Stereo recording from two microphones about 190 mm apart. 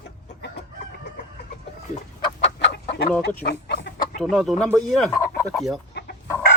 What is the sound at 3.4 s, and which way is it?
Speech, 60° left (ahead or behind).